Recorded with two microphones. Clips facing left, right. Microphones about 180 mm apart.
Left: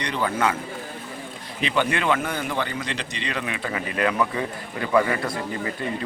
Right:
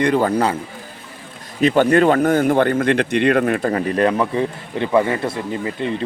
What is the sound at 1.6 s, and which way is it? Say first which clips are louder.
Speech: right 10 dB; 45° right (ahead or behind).